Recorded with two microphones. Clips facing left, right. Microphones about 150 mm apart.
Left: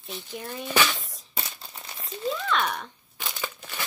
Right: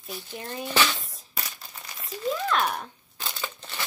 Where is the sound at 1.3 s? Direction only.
25° left (ahead or behind).